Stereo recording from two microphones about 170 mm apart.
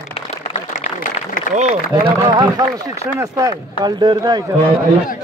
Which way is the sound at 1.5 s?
40° right (ahead or behind).